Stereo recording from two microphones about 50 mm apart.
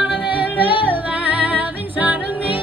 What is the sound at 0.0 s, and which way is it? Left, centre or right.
Music, right.